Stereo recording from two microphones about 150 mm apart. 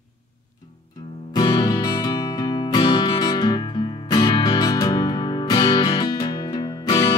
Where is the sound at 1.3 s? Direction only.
25° left (ahead or behind).